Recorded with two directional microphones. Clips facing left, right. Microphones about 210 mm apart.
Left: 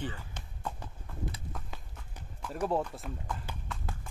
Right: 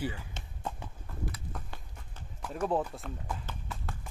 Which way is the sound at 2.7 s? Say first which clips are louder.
Right 1 dB; 5° right (ahead or behind).